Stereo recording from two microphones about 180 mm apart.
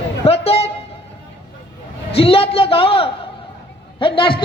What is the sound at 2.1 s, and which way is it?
A man's voice, 30° left (ahead or behind).